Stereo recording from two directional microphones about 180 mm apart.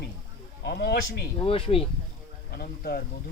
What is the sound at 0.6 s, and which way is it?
Speech, 65° left (ahead or behind).